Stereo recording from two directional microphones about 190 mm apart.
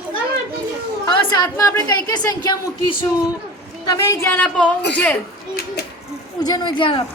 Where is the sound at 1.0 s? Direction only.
20° left (ahead or behind); by 5.2 s 5° left (ahead or behind).